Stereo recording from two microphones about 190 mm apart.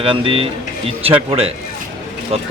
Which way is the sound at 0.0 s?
30° right (ahead or behind).